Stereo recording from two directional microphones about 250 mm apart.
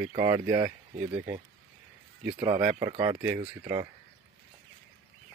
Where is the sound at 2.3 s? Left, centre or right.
Centre.